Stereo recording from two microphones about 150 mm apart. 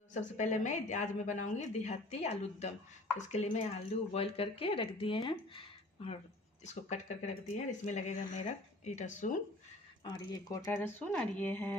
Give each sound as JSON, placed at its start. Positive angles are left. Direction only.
{"t": 0.1, "sound": "speech", "side_deg": 55}
{"t": 6.6, "sound": "speech", "side_deg": 50}
{"t": 10.0, "sound": "speech", "side_deg": 25}